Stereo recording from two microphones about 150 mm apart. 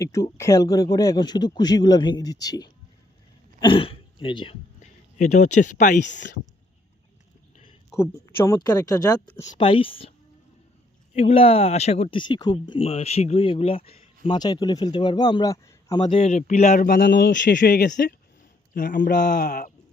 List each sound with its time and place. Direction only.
0.0 s a man's voice: 20° left (ahead or behind)
4.8 s speech: 55° left (ahead or behind)
7.9 s a man's voice: 15° left (ahead or behind); by 10.1 s 35° left (ahead or behind)
11.1 s speech: 40° left (ahead or behind)
14.3 s a man's voice: 25° left (ahead or behind)
16.2 s speech: 55° left (ahead or behind)
16.8 s a man's voice: 75° left (ahead or behind)
18.7 s a man's voice: 65° left (ahead or behind); by 19.7 s 90° left